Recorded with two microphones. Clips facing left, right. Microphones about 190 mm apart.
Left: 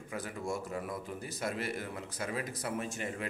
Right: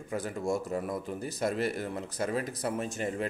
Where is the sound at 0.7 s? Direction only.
40° right (ahead or behind).